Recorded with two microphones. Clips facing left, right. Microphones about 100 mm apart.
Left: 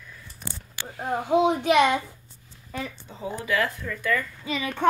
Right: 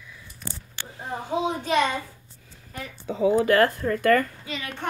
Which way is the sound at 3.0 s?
70° right (ahead or behind).